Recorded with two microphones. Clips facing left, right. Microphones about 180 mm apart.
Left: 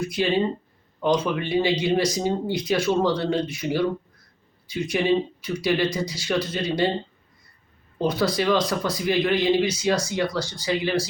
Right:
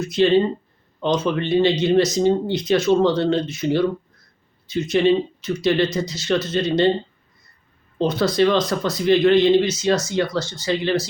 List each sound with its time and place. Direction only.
0.0 s speech: 10° left (ahead or behind)
8.0 s speech: 10° left (ahead or behind)